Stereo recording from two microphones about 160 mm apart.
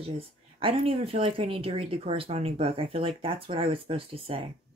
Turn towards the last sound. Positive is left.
turn(degrees=-35)  # may be behind; listen again after turning